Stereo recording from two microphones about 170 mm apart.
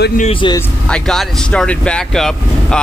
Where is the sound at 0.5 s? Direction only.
5° left (ahead or behind).